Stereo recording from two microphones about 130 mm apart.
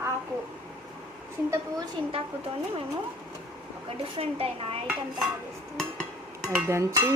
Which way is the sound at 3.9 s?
50° right (ahead or behind).